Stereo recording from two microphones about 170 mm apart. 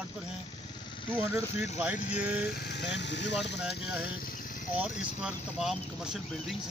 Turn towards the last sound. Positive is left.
turn(degrees=-5)  # may be behind; listen again after turning